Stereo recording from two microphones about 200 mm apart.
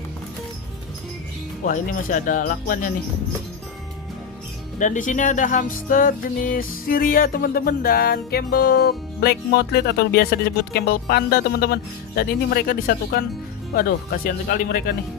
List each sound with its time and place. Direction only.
1.6 s speech: 40° left (ahead or behind)
4.7 s speech: 40° left (ahead or behind)